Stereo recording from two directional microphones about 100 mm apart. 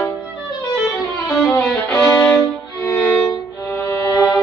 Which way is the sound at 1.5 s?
10° left (ahead or behind).